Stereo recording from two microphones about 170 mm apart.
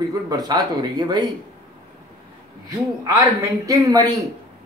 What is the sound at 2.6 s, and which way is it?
Speech, 20° right (ahead or behind).